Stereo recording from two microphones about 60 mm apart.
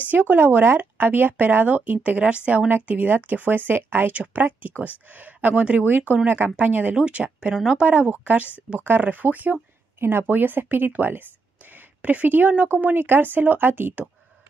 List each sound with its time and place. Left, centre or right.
0.0 s speech: right
5.9 s speech: right; by 7.8 s centre
7.8 s speech: right
9.9 s speech: right